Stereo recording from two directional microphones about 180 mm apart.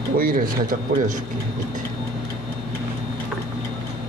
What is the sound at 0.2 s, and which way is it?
Speech, 50° right (ahead or behind).